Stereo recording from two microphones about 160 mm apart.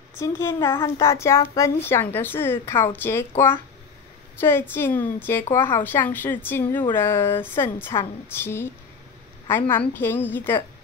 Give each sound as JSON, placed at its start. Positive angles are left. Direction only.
{"t": 0.2, "sound": "a woman's voice", "side_deg": 20}
{"t": 9.7, "sound": "a woman's voice", "side_deg": 10}